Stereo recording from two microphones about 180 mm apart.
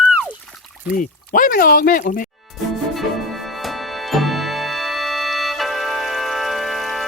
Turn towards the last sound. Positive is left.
turn(degrees=0)  # may be behind; listen again after turning